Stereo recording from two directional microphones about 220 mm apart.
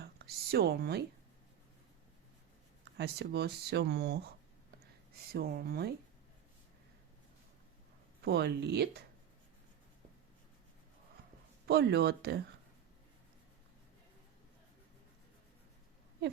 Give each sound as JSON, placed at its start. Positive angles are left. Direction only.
{"t": 0.0, "sound": "speech", "side_deg": -45}
{"t": 3.0, "sound": "speech", "side_deg": -45}
{"t": 5.3, "sound": "speech", "side_deg": -45}
{"t": 8.2, "sound": "speech", "side_deg": -45}
{"t": 11.6, "sound": "speech", "side_deg": -50}